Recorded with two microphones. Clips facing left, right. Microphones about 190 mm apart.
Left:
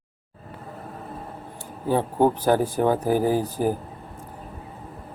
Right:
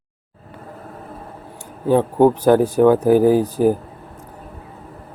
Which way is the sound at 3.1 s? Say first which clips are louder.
Right 8 dB; 15° right (ahead or behind).